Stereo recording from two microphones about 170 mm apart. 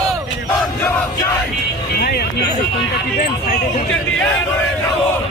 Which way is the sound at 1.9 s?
65° left (ahead or behind).